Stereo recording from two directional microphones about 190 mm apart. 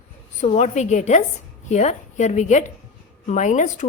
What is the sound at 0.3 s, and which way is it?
A woman's voice, 40° left (ahead or behind).